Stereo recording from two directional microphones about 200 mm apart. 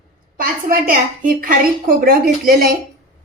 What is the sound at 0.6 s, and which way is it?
A woman's voice, 45° right (ahead or behind).